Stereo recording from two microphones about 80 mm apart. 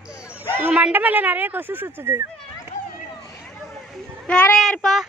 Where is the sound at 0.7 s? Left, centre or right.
Centre.